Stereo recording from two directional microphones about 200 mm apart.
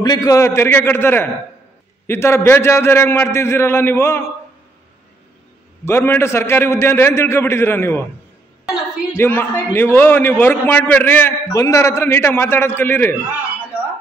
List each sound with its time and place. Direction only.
0.0 s a man's voice: 20° left (ahead or behind)
5.9 s a man's voice: 10° left (ahead or behind)
9.1 s a man's voice: 10° left (ahead or behind)
13.7 s a sound: 5° right (ahead or behind)